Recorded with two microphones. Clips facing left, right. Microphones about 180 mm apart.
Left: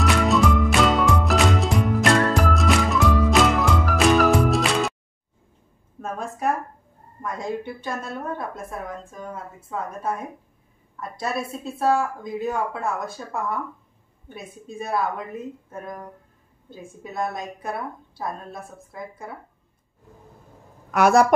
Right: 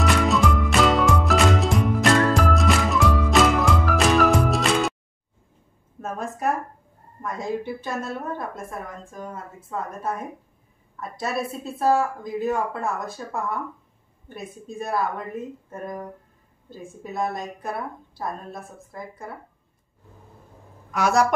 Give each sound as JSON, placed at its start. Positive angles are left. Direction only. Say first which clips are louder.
{"t": 0.0, "sound": "music", "louder": "left 1 dB", "side_deg": 0}
{"t": 5.9, "sound": "a sound", "louder": "even", "side_deg": 0}
{"t": 7.2, "sound": "a woman's voice", "louder": "right 1 dB", "side_deg": 0}
{"t": 20.9, "sound": "speech", "louder": "left 4 dB", "side_deg": 55}